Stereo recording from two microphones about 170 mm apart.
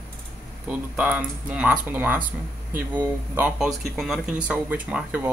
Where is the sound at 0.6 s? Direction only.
10° right (ahead or behind).